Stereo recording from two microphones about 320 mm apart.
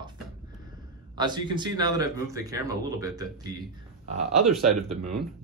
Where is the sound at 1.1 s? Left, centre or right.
Centre.